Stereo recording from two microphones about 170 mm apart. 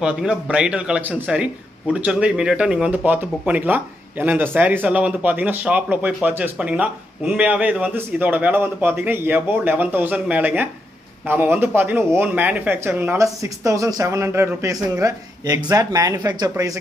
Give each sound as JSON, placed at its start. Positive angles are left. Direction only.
{"t": 0.0, "sound": "speech", "side_deg": -5}